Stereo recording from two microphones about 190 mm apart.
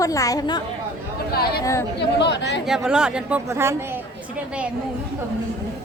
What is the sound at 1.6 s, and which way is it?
Speech, 15° left (ahead or behind).